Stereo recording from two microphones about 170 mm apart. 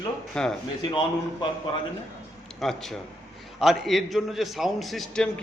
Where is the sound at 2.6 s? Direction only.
Centre (ahead or behind).